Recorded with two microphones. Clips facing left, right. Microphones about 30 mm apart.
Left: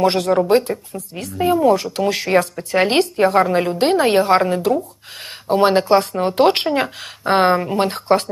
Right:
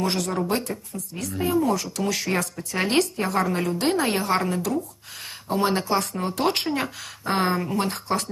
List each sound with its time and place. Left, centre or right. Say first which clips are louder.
0.0 s speech: left 9 dB; left